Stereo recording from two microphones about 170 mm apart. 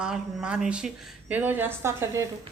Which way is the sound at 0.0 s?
5° right (ahead or behind).